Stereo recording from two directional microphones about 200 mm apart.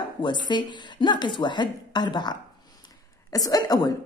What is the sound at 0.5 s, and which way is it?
Speech, 20° left (ahead or behind).